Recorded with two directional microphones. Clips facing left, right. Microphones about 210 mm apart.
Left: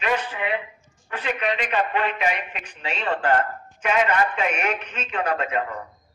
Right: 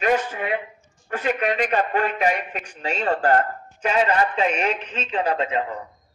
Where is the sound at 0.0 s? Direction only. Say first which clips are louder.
Right 4 dB; 45° right (ahead or behind); by 5.8 s 30° right (ahead or behind).